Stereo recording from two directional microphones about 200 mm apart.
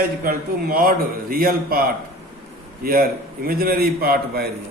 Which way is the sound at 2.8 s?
45° right (ahead or behind).